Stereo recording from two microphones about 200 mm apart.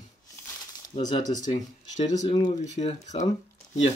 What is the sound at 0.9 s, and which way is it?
Speech, 30° left (ahead or behind).